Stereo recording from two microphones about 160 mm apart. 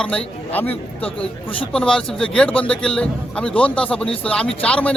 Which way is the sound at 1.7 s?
5° left (ahead or behind).